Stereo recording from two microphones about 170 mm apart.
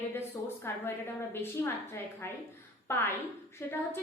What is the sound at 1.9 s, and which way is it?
A woman's voice, 15° left (ahead or behind).